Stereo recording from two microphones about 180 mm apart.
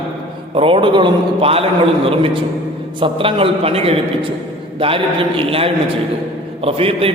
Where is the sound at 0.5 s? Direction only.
30° right (ahead or behind).